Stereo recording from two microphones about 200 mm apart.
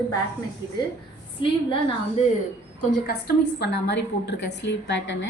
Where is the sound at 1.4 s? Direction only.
25° left (ahead or behind).